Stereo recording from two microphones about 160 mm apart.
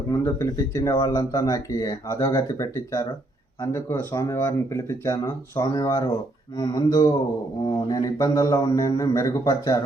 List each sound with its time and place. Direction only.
0.1 s speech: 15° left (ahead or behind)